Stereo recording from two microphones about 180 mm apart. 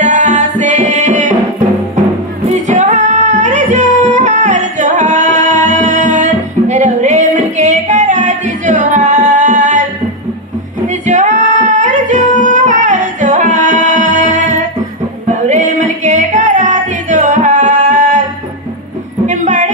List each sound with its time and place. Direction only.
0.0 s music: 40° right (ahead or behind)
2.5 s music: 40° right (ahead or behind)
10.9 s singing: 45° right (ahead or behind)
15.2 s music: 40° right (ahead or behind)
19.2 s a sound: 40° right (ahead or behind)